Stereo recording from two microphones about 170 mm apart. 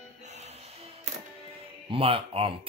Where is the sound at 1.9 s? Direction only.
35° right (ahead or behind).